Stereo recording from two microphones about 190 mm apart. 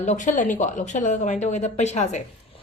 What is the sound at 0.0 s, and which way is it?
Speech, 40° left (ahead or behind).